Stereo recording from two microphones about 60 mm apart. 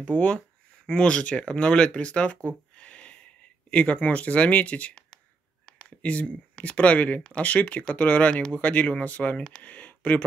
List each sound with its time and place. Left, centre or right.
0.0 s speech: left